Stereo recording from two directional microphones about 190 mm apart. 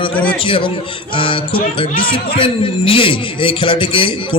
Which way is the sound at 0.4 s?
25° left (ahead or behind).